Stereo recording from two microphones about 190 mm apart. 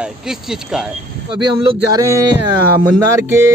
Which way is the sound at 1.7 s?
20° right (ahead or behind).